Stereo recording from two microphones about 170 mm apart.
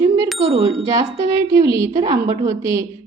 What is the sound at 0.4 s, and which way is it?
Bicycle bell, 20° right (ahead or behind).